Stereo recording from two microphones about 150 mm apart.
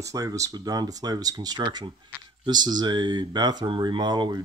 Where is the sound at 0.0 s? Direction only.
20° right (ahead or behind).